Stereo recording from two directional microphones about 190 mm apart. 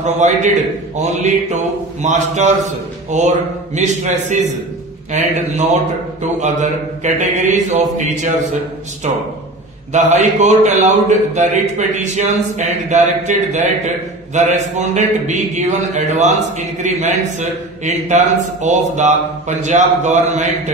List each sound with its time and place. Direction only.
0.0 s a man's voice: 40° right (ahead or behind)
9.9 s a man's voice: 40° right (ahead or behind)